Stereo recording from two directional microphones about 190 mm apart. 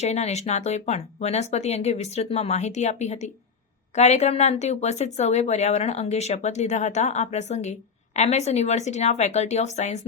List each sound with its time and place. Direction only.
0.0 s speech: 35° left (ahead or behind)